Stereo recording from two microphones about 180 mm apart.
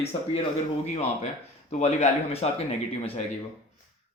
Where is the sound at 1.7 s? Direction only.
40° left (ahead or behind).